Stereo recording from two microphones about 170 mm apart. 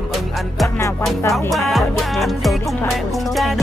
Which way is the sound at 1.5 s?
Centre (ahead or behind).